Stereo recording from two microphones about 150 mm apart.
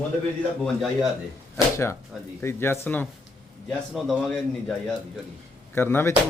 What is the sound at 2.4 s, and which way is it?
Speech, 15° left (ahead or behind).